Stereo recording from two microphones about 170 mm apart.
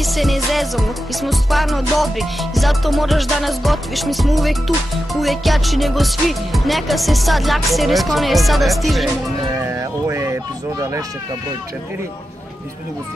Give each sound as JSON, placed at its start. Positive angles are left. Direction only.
{"t": 0.0, "sound": "music", "side_deg": 0}
{"t": 9.5, "sound": "speech", "side_deg": -15}